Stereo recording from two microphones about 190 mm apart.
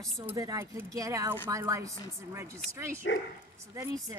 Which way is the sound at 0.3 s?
15° right (ahead or behind).